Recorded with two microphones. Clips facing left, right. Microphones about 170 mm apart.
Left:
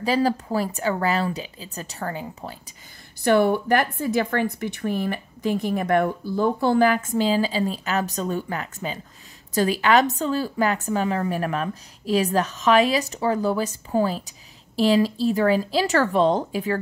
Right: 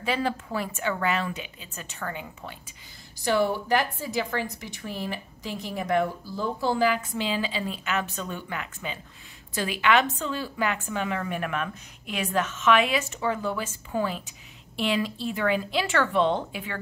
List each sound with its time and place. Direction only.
0.0 s a woman's voice: 35° left (ahead or behind)
3.2 s a woman's voice: 55° left (ahead or behind); by 16.8 s 40° left (ahead or behind)